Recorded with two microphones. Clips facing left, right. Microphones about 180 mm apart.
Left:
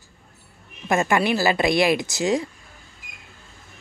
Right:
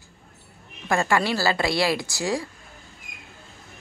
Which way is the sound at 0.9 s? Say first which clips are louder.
Left 2 dB; 20° left (ahead or behind).